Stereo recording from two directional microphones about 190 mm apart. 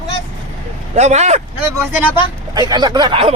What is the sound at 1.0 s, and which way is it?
Speech, 35° right (ahead or behind).